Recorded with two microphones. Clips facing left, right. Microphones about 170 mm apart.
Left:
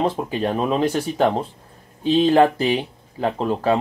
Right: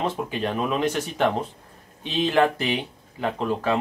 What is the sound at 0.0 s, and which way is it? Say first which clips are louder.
Speech: left 4 dB; 35° left (ahead or behind).